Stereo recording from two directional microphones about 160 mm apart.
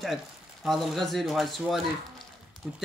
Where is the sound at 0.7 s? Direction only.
Centre (ahead or behind).